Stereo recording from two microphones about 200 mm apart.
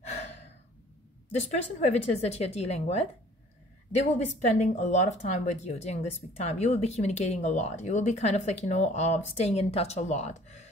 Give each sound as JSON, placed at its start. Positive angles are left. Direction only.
{"t": 0.0, "sound": "gasp", "side_deg": 30}
{"t": 1.3, "sound": "speech", "side_deg": 35}